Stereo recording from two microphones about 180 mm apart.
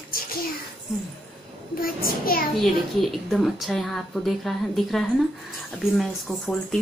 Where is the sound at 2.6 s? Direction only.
Centre (ahead or behind).